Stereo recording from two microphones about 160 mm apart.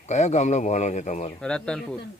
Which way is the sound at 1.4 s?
5° left (ahead or behind).